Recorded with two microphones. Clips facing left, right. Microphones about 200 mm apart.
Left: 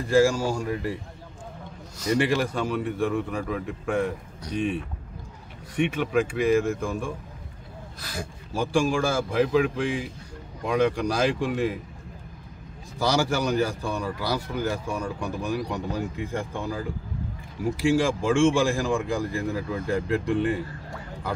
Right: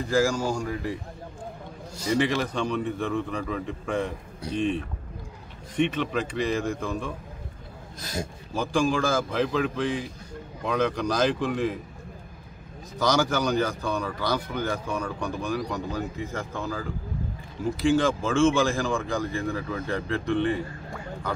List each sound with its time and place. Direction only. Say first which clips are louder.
0.2 s speech: left 2 dB; 10° left (ahead or behind)
2.1 s speech: left 1 dB; 10° left (ahead or behind)
5.8 s speech: left 2 dB; 10° left (ahead or behind)
8.0 s speech: right 3 dB; 20° right (ahead or behind)
8.5 s speech: left 1 dB; 10° left (ahead or behind)
13.0 s speech: even; 10° left (ahead or behind)